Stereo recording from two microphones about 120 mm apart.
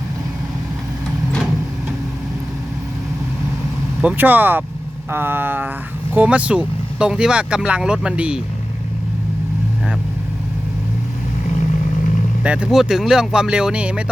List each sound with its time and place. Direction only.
4.0 s speech: 15° right (ahead or behind)
12.4 s speech: 10° right (ahead or behind)